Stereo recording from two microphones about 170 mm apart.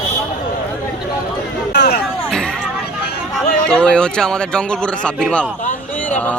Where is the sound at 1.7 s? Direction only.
65° left (ahead or behind).